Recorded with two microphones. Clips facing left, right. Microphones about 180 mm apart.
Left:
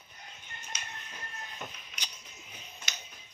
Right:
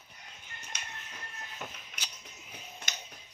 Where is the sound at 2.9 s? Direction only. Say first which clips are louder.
Right 1 dB; 50° right (ahead or behind).